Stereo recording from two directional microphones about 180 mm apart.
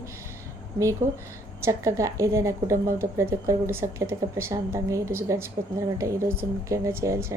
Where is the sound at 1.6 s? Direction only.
15° right (ahead or behind).